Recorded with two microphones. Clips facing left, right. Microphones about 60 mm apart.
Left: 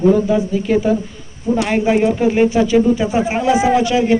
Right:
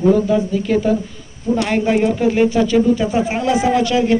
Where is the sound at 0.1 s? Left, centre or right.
Centre.